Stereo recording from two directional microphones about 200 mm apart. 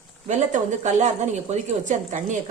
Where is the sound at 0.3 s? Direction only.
35° right (ahead or behind).